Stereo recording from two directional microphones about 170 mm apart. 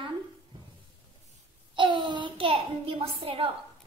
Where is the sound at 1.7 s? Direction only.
30° right (ahead or behind).